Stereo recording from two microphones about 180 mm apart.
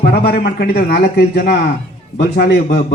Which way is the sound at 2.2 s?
65° left (ahead or behind).